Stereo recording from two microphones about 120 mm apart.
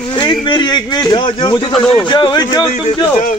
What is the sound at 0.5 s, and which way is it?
A man's voice, 40° left (ahead or behind).